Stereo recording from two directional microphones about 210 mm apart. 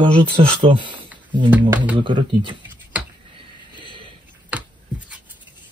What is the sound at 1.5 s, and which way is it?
Speech, 10° right (ahead or behind).